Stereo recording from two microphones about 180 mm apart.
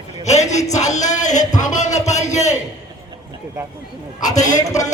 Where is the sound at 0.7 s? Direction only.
40° left (ahead or behind).